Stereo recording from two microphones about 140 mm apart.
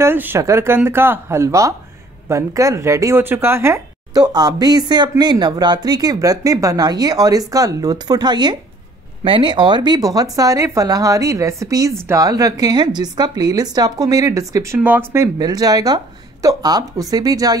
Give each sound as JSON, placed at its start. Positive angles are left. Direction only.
{"t": 0.0, "sound": "speech", "side_deg": -15}
{"t": 15.3, "sound": "speech", "side_deg": -25}